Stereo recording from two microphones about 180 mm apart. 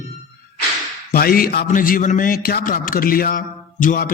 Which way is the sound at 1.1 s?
55° left (ahead or behind).